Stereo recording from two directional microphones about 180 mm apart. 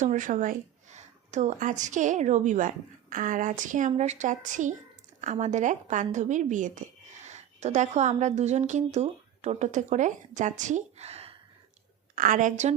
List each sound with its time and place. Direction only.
0.0 s a woman's voice: 45° right (ahead or behind)
12.1 s a woman's voice: 45° right (ahead or behind)